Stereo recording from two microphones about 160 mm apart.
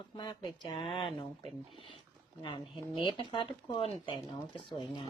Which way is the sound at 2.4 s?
30° left (ahead or behind).